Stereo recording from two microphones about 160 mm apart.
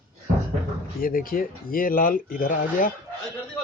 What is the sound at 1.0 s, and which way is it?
A man's voice, 65° left (ahead or behind).